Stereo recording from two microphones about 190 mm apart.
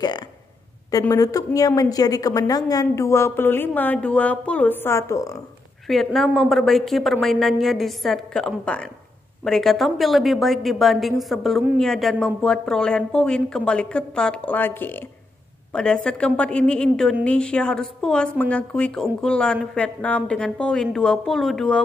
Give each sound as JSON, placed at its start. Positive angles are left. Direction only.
{"t": 0.9, "sound": "a woman's voice", "side_deg": 20}
{"t": 5.9, "sound": "a woman's voice", "side_deg": 0}